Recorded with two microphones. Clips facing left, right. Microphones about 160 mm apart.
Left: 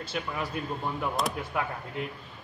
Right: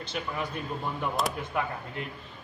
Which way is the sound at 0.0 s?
5° left (ahead or behind).